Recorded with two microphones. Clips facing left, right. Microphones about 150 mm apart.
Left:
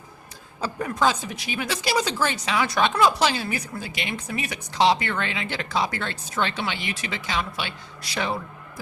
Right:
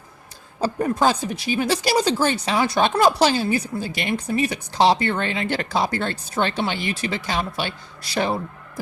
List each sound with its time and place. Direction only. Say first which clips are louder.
0.6 s speech: right 4 dB; 35° right (ahead or behind)